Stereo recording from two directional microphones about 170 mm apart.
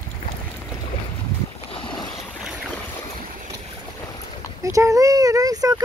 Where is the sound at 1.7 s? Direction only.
30° left (ahead or behind).